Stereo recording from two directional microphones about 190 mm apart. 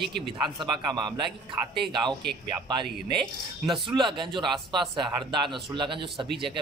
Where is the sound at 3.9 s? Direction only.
25° right (ahead or behind).